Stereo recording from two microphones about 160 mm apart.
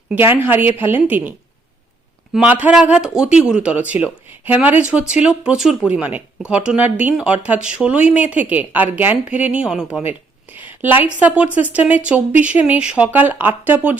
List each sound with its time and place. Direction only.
0.1 s speech: 10° right (ahead or behind)
2.3 s speech: 10° right (ahead or behind)